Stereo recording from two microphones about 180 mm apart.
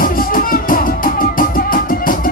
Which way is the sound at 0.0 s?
50° left (ahead or behind).